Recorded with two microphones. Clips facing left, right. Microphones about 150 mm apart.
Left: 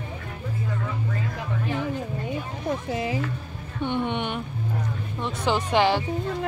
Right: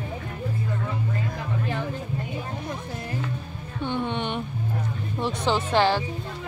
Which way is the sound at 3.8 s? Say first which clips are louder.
Left 1 dB; 20° left (ahead or behind).